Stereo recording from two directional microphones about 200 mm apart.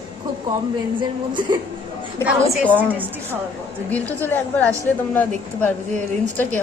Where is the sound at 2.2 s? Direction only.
10° right (ahead or behind).